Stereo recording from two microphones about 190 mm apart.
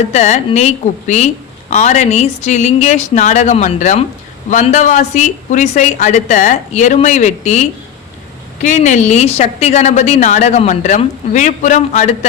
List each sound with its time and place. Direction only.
0.1 s a woman's voice: 35° left (ahead or behind)